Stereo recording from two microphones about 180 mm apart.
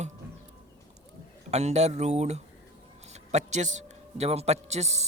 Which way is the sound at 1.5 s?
40° right (ahead or behind).